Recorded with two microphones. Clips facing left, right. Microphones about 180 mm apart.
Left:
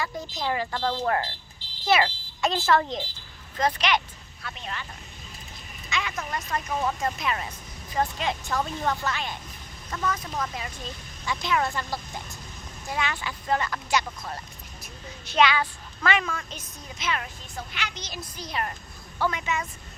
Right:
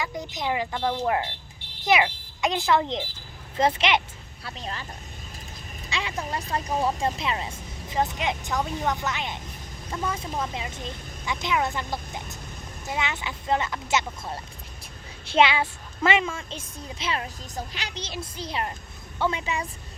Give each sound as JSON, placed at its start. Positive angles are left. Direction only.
{"t": 0.0, "sound": "speech", "side_deg": -20}
{"t": 4.4, "sound": "speech", "side_deg": -35}
{"t": 5.9, "sound": "speech", "side_deg": -30}